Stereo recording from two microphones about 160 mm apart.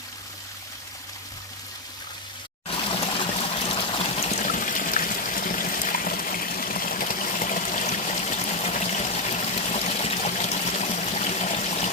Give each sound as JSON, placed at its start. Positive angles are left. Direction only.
{"t": 2.6, "sound": "water", "side_deg": 35}